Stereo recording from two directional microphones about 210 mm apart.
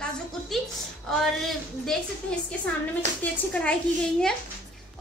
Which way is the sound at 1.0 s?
Centre (ahead or behind).